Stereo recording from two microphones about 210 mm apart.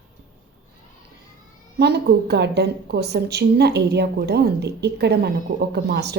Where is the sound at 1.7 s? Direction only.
50° right (ahead or behind).